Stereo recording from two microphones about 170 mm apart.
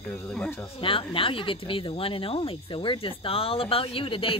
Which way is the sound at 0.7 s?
30° left (ahead or behind).